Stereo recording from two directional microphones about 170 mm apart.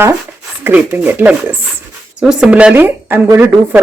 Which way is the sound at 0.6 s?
10° right (ahead or behind).